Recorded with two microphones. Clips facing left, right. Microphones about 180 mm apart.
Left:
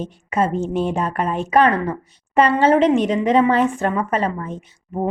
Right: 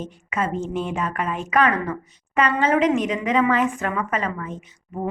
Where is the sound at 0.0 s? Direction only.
30° left (ahead or behind).